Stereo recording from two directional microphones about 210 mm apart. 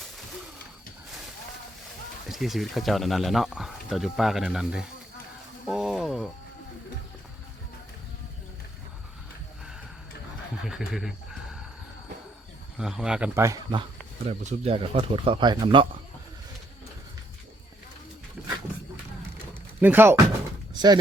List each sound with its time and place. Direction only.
2.3 s speech: centre (ahead or behind)
10.6 s speech: centre (ahead or behind)
12.8 s a man's voice: 5° right (ahead or behind)
14.3 s speech: 30° right (ahead or behind)
19.8 s a man's voice: 10° right (ahead or behind)
20.7 s speech: 20° right (ahead or behind)